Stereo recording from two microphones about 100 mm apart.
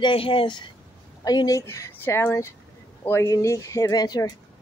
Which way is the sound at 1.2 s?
40° left (ahead or behind).